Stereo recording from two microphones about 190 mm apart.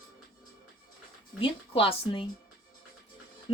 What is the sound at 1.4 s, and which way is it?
Speech, 30° left (ahead or behind).